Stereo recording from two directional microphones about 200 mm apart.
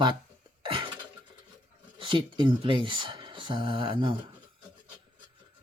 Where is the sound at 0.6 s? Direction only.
25° right (ahead or behind).